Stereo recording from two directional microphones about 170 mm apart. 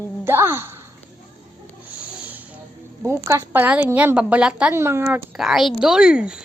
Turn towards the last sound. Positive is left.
turn(degrees=-5)  # may be behind; listen again after turning